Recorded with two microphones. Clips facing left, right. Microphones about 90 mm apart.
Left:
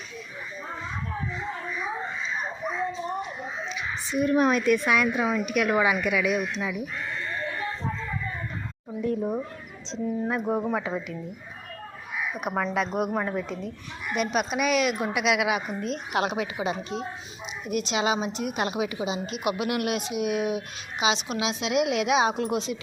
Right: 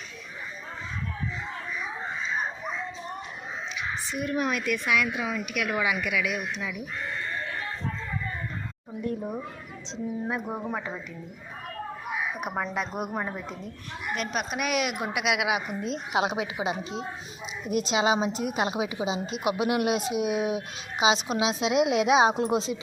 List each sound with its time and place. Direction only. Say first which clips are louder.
4.2 s a woman's voice: left 7 dB; 35° left (ahead or behind)
9.0 s a woman's voice: left 4 dB; centre (ahead or behind)
10.5 s speech: left 6 dB; 5° left (ahead or behind)
12.4 s a woman's voice: left 3 dB; 5° right (ahead or behind)
17.7 s a woman's voice: right 1 dB; 30° right (ahead or behind)